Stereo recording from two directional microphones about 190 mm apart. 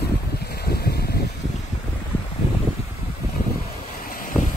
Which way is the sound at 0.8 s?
55° left (ahead or behind).